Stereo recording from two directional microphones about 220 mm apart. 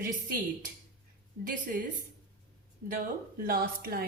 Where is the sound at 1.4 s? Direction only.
40° right (ahead or behind).